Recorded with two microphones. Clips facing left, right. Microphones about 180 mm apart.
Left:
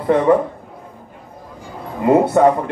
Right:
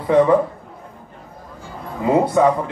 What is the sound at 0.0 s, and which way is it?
Speech, 60° left (ahead or behind).